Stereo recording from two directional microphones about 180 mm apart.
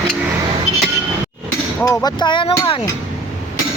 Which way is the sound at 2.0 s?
25° left (ahead or behind).